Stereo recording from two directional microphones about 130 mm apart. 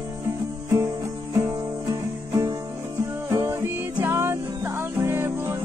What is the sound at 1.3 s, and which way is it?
Music, 30° right (ahead or behind).